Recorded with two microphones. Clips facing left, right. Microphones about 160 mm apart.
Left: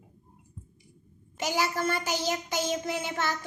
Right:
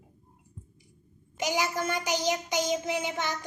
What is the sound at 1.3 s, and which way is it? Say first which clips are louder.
Child singing: even; 15° right (ahead or behind).